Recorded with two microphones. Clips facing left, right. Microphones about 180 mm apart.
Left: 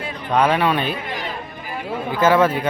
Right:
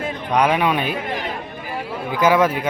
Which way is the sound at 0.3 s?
15° right (ahead or behind).